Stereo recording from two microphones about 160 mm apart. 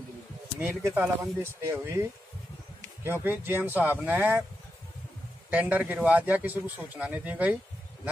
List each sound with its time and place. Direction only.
0.6 s a man's voice: 5° right (ahead or behind)
5.5 s a man's voice: 10° right (ahead or behind)